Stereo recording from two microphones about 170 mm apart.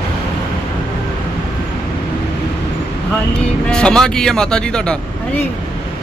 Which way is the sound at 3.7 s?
5° left (ahead or behind).